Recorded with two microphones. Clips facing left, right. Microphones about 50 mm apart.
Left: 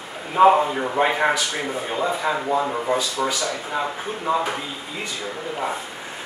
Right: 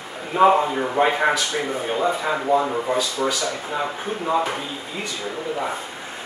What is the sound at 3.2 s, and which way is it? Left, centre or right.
Speech, centre.